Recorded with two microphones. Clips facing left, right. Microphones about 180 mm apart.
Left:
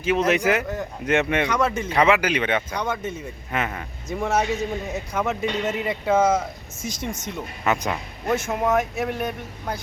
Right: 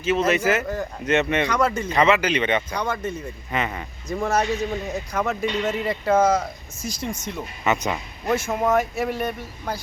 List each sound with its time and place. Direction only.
0.0 s speech: 15° left (ahead or behind)
6.8 s speech: 20° left (ahead or behind)
7.3 s speech: centre (ahead or behind)